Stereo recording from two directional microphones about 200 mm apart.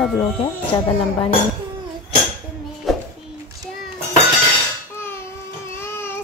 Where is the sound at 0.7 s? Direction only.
15° left (ahead or behind).